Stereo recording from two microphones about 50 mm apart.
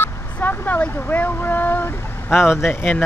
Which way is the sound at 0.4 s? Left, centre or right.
Left.